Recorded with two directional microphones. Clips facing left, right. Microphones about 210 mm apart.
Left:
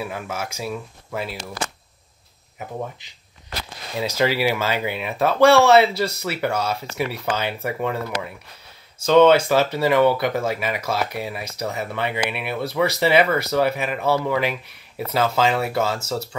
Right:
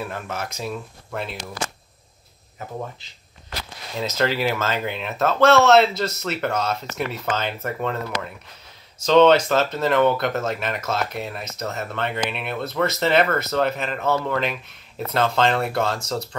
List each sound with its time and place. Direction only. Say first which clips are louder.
0.0 s speech: left 1 dB; 10° left (ahead or behind)
4.2 s speech: left 2 dB; 10° left (ahead or behind)